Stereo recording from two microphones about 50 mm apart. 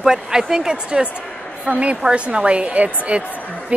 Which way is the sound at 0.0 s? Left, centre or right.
Centre.